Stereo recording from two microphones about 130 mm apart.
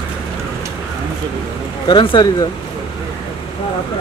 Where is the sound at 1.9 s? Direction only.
40° left (ahead or behind).